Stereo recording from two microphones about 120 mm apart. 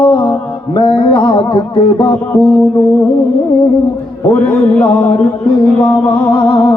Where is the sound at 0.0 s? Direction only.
45° left (ahead or behind).